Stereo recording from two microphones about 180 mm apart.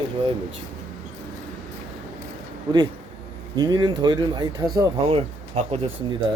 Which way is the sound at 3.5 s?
25° right (ahead or behind).